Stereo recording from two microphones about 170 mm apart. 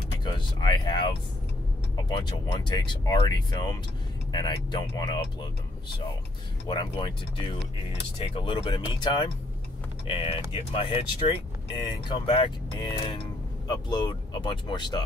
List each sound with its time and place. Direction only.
0.2 s speech: 25° left (ahead or behind)
6.7 s speech: 25° left (ahead or behind)
8.2 s speech: 30° left (ahead or behind)